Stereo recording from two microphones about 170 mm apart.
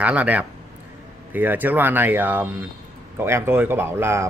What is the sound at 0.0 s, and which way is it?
Speech, 10° right (ahead or behind).